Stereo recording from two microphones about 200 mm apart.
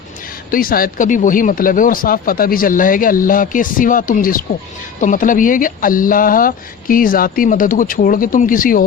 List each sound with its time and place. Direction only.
0.5 s speech: 45° left (ahead or behind)